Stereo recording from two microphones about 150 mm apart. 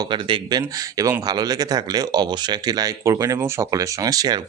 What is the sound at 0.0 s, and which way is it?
Speech, 30° right (ahead or behind).